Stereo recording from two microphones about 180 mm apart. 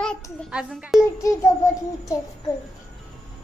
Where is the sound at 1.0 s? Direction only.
15° left (ahead or behind).